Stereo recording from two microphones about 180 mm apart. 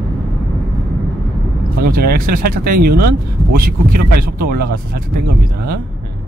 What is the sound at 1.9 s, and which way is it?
Speech, 55° right (ahead or behind).